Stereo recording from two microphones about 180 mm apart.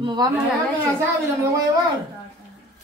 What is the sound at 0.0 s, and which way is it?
Speech, 25° right (ahead or behind).